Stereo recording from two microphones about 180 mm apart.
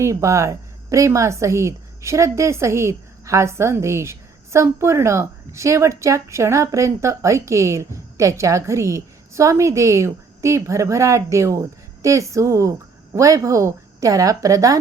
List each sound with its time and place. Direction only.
0.0 s a woman's voice: 15° right (ahead or behind)